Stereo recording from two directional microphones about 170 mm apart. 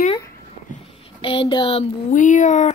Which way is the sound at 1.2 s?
30° left (ahead or behind).